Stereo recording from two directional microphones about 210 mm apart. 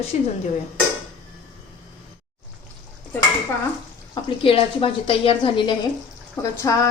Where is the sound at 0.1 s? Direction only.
30° left (ahead or behind).